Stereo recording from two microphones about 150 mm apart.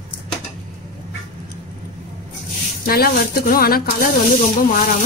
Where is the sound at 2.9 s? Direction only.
90° left.